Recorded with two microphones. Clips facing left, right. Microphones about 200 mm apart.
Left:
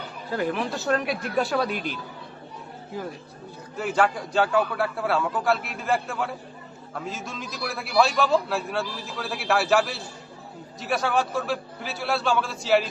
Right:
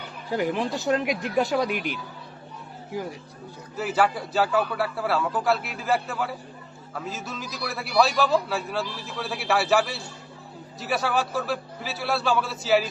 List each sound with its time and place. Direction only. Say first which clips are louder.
0.3 s a man's voice: right 1 dB; 15° right (ahead or behind)